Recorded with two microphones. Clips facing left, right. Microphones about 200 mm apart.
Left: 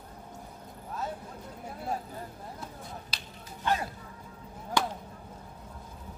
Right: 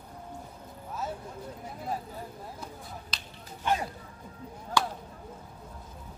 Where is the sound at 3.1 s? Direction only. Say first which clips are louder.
Even; 10° left (ahead or behind).